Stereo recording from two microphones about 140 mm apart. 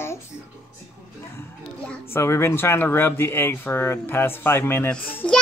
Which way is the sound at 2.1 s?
20° left (ahead or behind).